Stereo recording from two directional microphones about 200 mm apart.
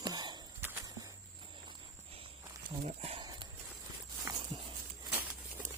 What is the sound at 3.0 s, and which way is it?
Speech, 30° right (ahead or behind).